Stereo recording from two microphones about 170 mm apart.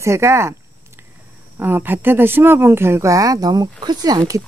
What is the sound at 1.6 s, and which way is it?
Speech, 10° right (ahead or behind).